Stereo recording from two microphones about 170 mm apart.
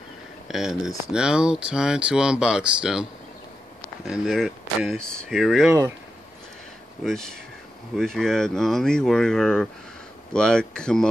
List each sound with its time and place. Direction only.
0.5 s speech: centre (ahead or behind)
4.1 s speech: centre (ahead or behind)
5.7 s speech: 15° right (ahead or behind)
7.0 s speech: centre (ahead or behind)